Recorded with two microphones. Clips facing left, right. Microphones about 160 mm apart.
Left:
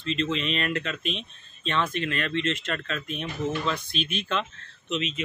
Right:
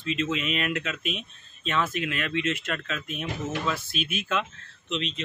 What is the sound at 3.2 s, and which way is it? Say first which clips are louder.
Speech: left 2 dB; 75° right (ahead or behind).